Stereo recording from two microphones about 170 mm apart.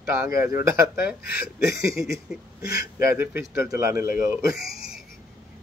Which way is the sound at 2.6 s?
20° right (ahead or behind).